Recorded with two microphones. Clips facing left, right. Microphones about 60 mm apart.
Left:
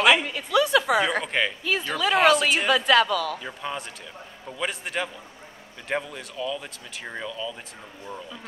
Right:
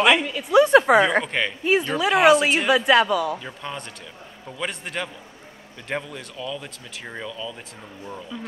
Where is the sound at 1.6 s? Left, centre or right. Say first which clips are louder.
Right 6 dB; right.